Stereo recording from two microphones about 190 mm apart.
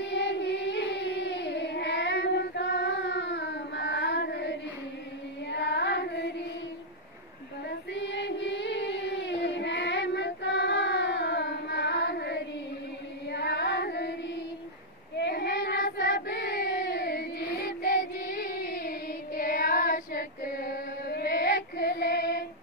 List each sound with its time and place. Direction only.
0.0 s singing: 65° left (ahead or behind)
5.5 s music: 65° left (ahead or behind)
7.9 s singing: 70° left (ahead or behind)
13.3 s child singing: 65° left (ahead or behind)
15.1 s child singing: 60° left (ahead or behind)